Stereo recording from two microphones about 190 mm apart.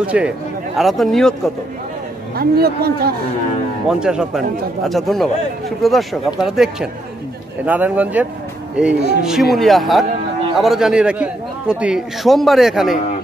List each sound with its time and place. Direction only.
0.0 s a man's voice: 5° right (ahead or behind)
2.3 s speech: 55° right (ahead or behind)
4.0 s a man's voice: 5° right (ahead or behind)